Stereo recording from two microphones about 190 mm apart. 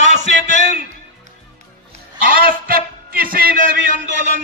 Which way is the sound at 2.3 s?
50° right (ahead or behind).